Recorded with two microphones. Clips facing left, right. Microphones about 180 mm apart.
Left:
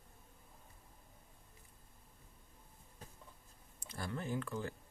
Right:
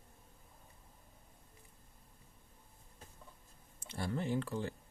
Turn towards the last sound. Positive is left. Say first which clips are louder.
# right 3 dB
turn(degrees=-30)  # may be behind; listen again after turning